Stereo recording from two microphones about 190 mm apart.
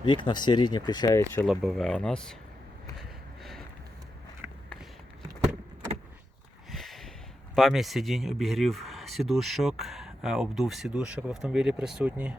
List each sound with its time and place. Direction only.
0.0 s speech: 25° left (ahead or behind)
1.5 s speech: centre (ahead or behind)
6.7 s a sound: centre (ahead or behind)
7.5 s speech: centre (ahead or behind)